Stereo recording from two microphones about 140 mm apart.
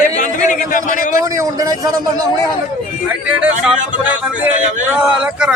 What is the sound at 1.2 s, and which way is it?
Speech, 25° right (ahead or behind).